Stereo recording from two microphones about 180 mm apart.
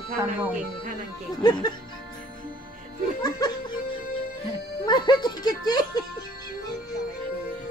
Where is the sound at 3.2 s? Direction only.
20° left (ahead or behind).